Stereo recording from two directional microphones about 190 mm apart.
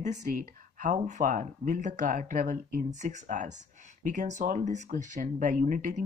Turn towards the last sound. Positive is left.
turn(degrees=-45)  # may be behind; listen again after turning